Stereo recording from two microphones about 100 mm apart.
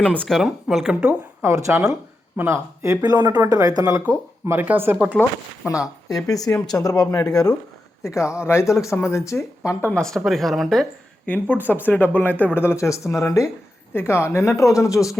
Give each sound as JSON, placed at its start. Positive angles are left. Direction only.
{"t": 0.3, "sound": "speech", "side_deg": 0}
{"t": 1.4, "sound": "speech", "side_deg": -30}
{"t": 4.4, "sound": "speech", "side_deg": -20}
{"t": 5.6, "sound": "speech", "side_deg": 30}
{"t": 9.9, "sound": "speech", "side_deg": 5}
{"t": 11.3, "sound": "speech", "side_deg": 15}